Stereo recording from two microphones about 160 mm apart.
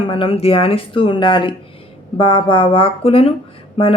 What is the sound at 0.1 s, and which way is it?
Speech, 35° left (ahead or behind).